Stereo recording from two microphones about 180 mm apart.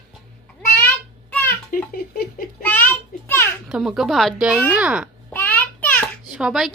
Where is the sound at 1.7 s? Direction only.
55° left (ahead or behind).